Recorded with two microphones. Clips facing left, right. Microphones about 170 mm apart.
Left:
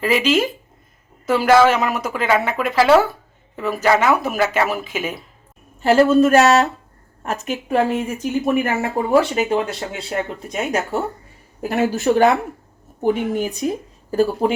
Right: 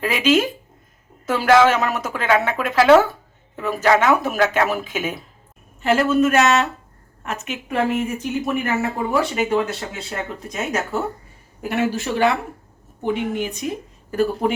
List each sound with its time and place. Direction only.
0.0 s speech: centre (ahead or behind)
5.8 s speech: 35° left (ahead or behind)